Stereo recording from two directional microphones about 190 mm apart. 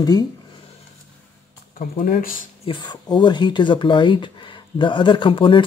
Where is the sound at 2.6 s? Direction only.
25° left (ahead or behind).